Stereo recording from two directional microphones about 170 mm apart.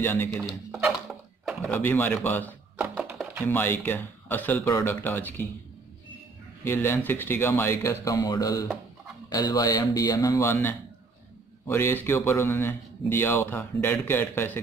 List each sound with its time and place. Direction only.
0.0 s speech: 10° left (ahead or behind)
0.8 s a sound: 5° right (ahead or behind)
1.7 s speech: 10° left (ahead or behind)
2.8 s music: 5° right (ahead or behind)
3.4 s speech: 10° left (ahead or behind)
6.6 s speech: 15° left (ahead or behind)